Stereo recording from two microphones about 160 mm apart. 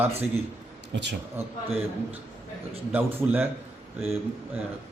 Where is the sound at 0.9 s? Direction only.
90° right.